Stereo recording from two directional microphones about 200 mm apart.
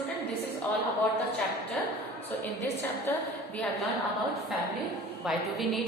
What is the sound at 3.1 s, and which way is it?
Speech, 10° left (ahead or behind).